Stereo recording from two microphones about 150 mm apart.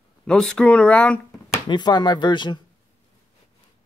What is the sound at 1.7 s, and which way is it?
Speech, 30° left (ahead or behind).